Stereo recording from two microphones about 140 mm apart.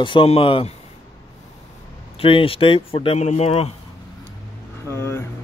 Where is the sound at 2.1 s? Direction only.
40° left (ahead or behind).